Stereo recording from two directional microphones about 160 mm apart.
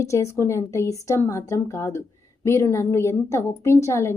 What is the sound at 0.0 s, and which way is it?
A woman's voice, 20° left (ahead or behind).